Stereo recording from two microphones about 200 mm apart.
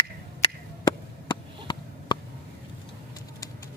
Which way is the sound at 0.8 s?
20° left (ahead or behind).